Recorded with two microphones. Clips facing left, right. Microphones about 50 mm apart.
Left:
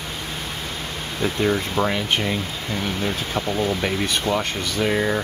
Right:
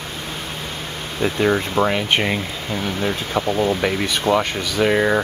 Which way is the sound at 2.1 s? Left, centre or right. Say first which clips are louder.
Right 3 dB; right.